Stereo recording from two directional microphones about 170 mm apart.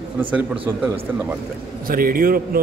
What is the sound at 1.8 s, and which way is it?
Speech, 55° right (ahead or behind).